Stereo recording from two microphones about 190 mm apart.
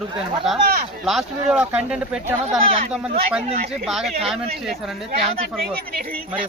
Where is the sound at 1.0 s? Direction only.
Centre (ahead or behind).